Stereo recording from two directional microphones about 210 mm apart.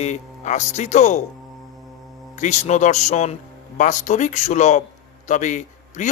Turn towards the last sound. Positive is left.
turn(degrees=35)  # may be behind; listen again after turning